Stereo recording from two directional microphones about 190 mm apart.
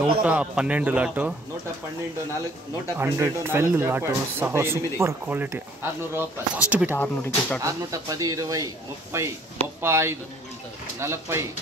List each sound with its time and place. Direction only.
0.2 s speech: 5° right (ahead or behind)
3.0 s speech: 10° right (ahead or behind)
7.0 s speech: 10° left (ahead or behind)
7.6 s speech: 15° right (ahead or behind)